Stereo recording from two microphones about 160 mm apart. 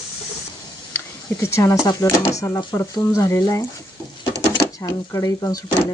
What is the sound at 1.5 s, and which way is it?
Speech, 20° left (ahead or behind).